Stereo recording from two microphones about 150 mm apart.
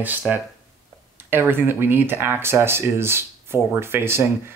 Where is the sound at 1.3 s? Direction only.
15° right (ahead or behind).